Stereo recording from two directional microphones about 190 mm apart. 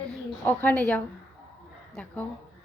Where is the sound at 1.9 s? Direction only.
10° left (ahead or behind).